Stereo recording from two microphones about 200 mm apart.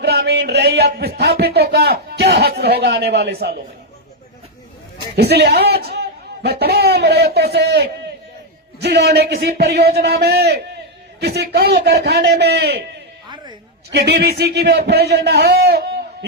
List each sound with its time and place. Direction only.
0.0 s speech: 55° right (ahead or behind)
5.1 s a man's voice: 55° right (ahead or behind)
13.2 s a sound: 20° right (ahead or behind)
13.9 s a man's voice: 50° right (ahead or behind)